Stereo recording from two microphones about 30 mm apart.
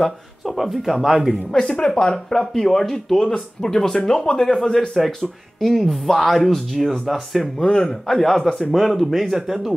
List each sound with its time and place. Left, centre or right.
0.5 s speech: centre
1.5 s speech: centre
3.2 s speech: left
4.7 s speech: centre
7.5 s speech: left
8.1 s speech: centre